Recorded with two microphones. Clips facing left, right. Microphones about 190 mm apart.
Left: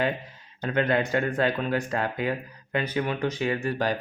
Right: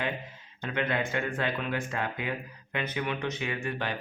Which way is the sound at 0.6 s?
40° left (ahead or behind).